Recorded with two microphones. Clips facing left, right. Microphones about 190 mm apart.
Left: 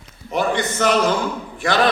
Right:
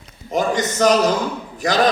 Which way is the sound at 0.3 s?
40° right (ahead or behind).